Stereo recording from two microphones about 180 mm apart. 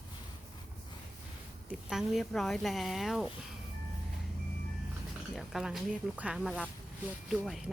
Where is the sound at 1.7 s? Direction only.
5° right (ahead or behind).